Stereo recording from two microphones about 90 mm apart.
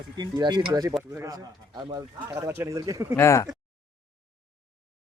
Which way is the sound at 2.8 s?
40° right (ahead or behind).